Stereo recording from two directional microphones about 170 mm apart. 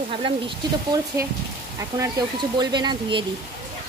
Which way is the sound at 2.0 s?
25° right (ahead or behind).